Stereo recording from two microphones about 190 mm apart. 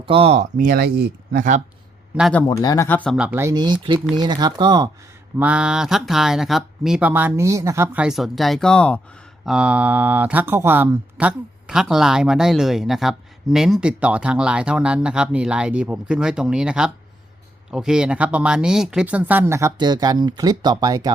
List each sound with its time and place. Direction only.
0.0 s speech: 30° right (ahead or behind); by 1.6 s 45° right (ahead or behind)
2.5 s speech: 20° left (ahead or behind)
3.2 s speech: 10° right (ahead or behind)
5.4 s speech: 5° right (ahead or behind)
9.5 s speech: 5° right (ahead or behind)